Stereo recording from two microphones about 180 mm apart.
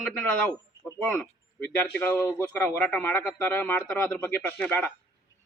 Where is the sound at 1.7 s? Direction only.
10° left (ahead or behind).